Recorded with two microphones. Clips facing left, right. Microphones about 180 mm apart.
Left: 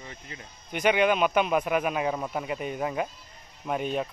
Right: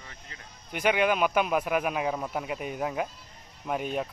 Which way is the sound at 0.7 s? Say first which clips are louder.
Left 2 dB; 5° right (ahead or behind).